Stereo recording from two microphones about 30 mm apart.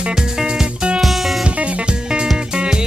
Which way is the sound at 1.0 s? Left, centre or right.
Centre.